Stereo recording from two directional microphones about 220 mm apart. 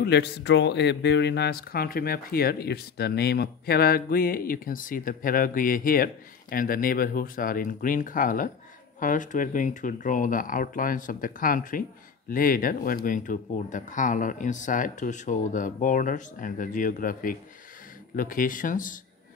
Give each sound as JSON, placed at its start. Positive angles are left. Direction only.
{"t": 0.0, "sound": "speech", "side_deg": 50}